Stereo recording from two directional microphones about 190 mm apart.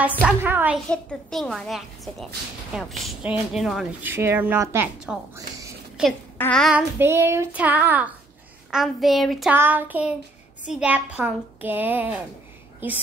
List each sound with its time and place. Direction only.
0.0 s a woman's voice: 5° right (ahead or behind)
0.8 s speech: 5° left (ahead or behind)
4.1 s a child's voice: 15° right (ahead or behind)
6.3 s speech: 5° left (ahead or behind)
7.0 s a child's voice: 10° right (ahead or behind)